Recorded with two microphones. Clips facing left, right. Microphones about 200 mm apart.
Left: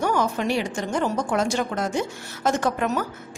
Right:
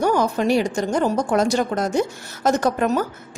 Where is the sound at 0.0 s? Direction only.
35° right (ahead or behind).